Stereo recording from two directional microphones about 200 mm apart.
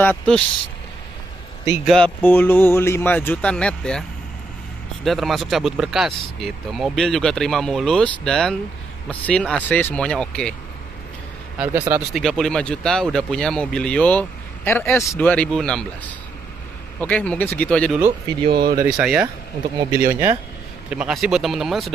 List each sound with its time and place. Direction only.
0.0 s speech: 5° left (ahead or behind)
1.9 s speech: 5° left (ahead or behind)
5.0 s speech: centre (ahead or behind)
11.5 s speech: 5° right (ahead or behind)
12.1 s speech: centre (ahead or behind)
18.5 s speech: 50° right (ahead or behind)
18.8 s speech: 5° right (ahead or behind)